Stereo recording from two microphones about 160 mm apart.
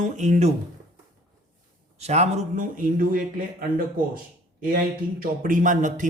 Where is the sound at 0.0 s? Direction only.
50° right (ahead or behind).